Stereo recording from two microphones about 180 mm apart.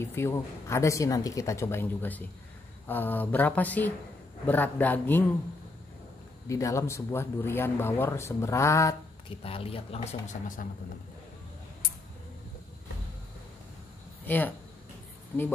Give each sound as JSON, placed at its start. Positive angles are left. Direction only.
{"t": 0.0, "sound": "speech", "side_deg": 15}
{"t": 6.4, "sound": "speech", "side_deg": 15}
{"t": 9.4, "sound": "speech", "side_deg": 30}
{"t": 14.2, "sound": "speech", "side_deg": 10}